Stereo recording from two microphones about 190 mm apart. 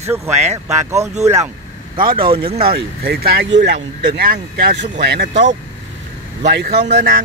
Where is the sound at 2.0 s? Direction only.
50° right (ahead or behind).